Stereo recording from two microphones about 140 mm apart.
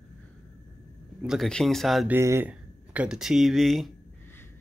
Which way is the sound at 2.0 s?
20° right (ahead or behind).